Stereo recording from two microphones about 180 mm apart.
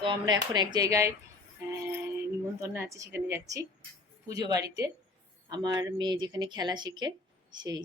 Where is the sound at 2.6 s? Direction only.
15° right (ahead or behind).